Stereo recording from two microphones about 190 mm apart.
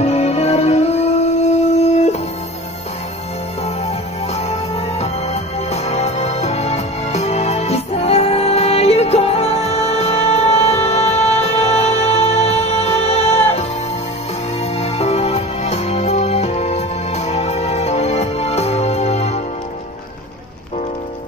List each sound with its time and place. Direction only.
0.0 s music: 35° left (ahead or behind)
3.6 s music: 35° left (ahead or behind)